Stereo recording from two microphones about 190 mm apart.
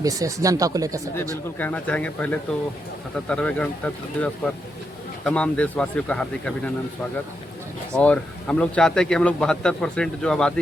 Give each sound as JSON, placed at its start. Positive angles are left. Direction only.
{"t": 0.0, "sound": "speech", "side_deg": -20}
{"t": 1.5, "sound": "a man's voice", "side_deg": 10}
{"t": 7.9, "sound": "a man's voice", "side_deg": 5}